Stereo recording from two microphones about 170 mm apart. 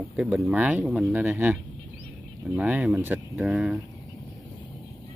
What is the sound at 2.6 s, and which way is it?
Speech, 5° right (ahead or behind).